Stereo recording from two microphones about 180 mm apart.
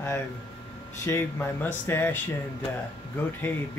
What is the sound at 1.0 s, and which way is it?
Speech, 15° left (ahead or behind).